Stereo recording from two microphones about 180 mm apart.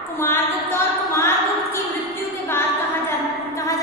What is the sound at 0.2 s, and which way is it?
Mantra, 10° left (ahead or behind).